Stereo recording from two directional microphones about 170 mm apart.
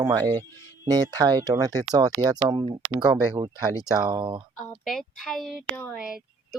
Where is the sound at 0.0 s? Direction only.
20° right (ahead or behind).